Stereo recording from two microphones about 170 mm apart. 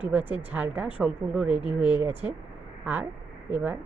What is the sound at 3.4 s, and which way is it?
Speech, 10° right (ahead or behind).